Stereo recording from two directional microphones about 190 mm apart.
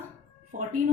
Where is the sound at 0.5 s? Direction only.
45° right (ahead or behind).